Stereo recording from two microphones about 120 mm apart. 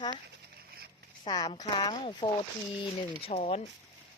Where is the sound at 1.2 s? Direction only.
35° left (ahead or behind).